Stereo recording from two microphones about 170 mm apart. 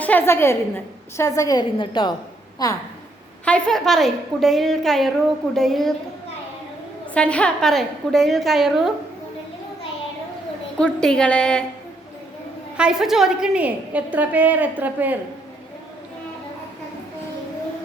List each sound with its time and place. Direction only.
0.0 s a woman's voice: 10° left (ahead or behind)
3.4 s a woman's voice: 5° left (ahead or behind)
7.1 s a woman's voice: 5° left (ahead or behind)
10.8 s a woman's voice: 5° left (ahead or behind)
12.7 s a woman's voice: 5° right (ahead or behind)